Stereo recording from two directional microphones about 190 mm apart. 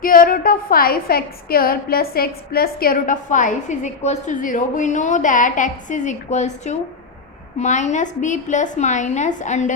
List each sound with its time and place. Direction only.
0.0 s a woman's voice: 45° left (ahead or behind)